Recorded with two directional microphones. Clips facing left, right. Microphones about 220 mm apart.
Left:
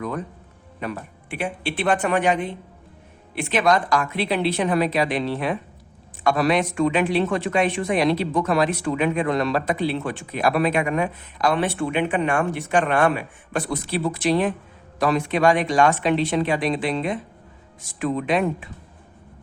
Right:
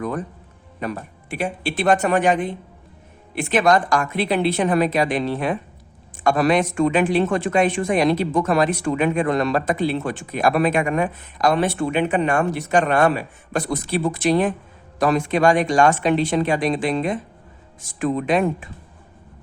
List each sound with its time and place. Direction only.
0.0 s music: 45° right (ahead or behind)
0.8 s speech: 40° right (ahead or behind)